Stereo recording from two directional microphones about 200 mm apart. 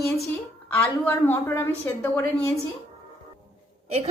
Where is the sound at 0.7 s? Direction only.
10° left (ahead or behind).